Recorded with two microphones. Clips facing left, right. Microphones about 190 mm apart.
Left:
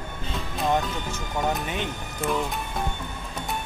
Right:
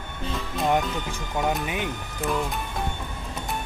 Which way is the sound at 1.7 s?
10° right (ahead or behind).